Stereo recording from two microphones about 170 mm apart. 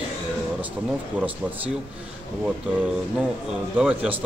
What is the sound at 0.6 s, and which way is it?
Speech, 10° right (ahead or behind).